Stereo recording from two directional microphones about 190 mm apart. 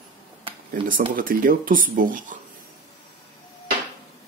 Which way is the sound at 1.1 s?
45° right (ahead or behind).